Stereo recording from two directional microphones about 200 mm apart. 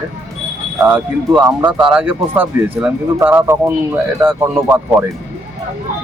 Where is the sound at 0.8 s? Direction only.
5° right (ahead or behind).